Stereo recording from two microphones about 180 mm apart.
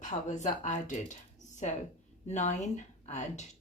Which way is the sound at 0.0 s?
40° left (ahead or behind).